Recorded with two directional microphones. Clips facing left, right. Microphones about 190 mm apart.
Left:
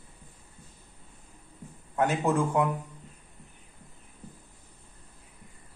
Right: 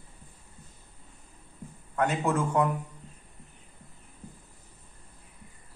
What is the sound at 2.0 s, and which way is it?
Speech, 15° left (ahead or behind).